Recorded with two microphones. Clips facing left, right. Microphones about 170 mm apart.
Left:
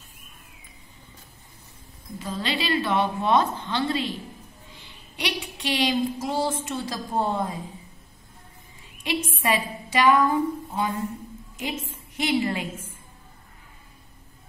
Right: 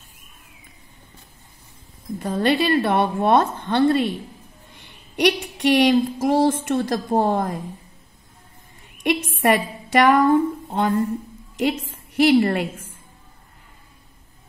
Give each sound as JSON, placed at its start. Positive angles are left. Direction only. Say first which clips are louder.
{"t": 2.1, "sound": "a woman's voice", "louder": "right 9 dB", "side_deg": -55}
{"t": 4.6, "sound": "a sound", "louder": "even", "side_deg": -60}
{"t": 6.2, "sound": "a woman's voice", "louder": "right 8 dB", "side_deg": -65}
{"t": 8.8, "sound": "a woman's voice", "louder": "right 6 dB", "side_deg": -60}